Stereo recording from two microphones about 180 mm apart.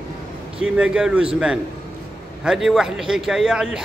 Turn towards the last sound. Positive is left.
turn(degrees=-5)  # may be behind; listen again after turning